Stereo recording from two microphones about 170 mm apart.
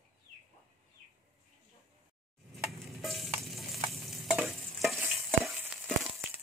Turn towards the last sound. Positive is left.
turn(degrees=0)  # may be behind; listen again after turning